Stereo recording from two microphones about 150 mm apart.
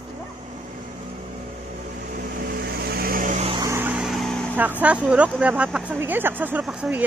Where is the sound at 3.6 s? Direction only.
20° right (ahead or behind).